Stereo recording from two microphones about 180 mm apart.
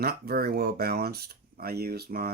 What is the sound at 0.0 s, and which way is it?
Speech, 60° right (ahead or behind).